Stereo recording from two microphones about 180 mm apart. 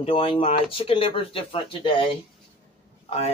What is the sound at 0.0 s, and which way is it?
Speech, 30° left (ahead or behind).